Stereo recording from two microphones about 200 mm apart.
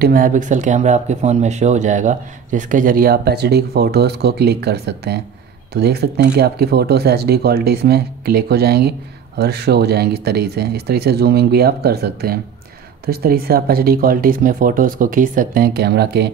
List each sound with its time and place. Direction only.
0.0 s speech: 45° right (ahead or behind)